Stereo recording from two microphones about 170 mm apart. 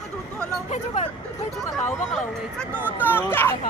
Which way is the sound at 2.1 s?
5° left (ahead or behind).